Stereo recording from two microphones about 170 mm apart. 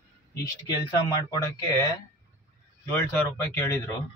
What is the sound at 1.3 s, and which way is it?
Speech, 20° left (ahead or behind).